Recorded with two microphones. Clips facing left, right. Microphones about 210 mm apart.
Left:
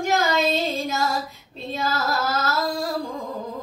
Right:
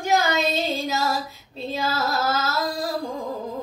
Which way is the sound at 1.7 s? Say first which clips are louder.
Even; centre (ahead or behind).